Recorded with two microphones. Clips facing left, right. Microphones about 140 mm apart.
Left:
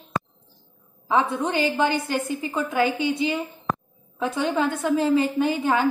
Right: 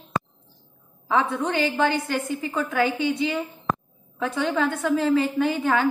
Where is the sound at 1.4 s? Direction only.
20° left (ahead or behind).